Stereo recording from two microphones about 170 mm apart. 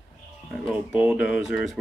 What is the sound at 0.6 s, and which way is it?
Speech, 5° right (ahead or behind).